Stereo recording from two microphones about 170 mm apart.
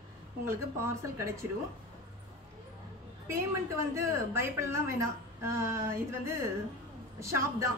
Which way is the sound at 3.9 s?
15° right (ahead or behind).